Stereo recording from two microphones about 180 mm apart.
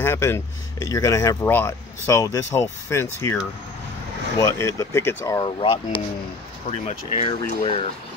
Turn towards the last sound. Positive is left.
turn(degrees=35)  # may be behind; listen again after turning